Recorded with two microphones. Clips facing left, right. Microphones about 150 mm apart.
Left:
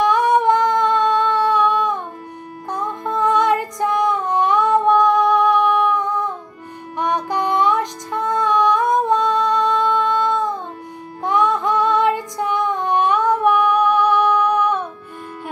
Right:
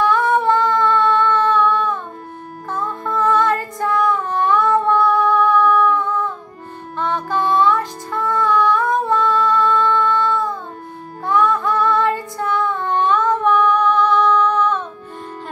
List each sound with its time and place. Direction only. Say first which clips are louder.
0.0 s humming: left 1 dB; 15° left (ahead or behind)
2.7 s music: even; 15° left (ahead or behind)
11.2 s female singing: even; 15° left (ahead or behind)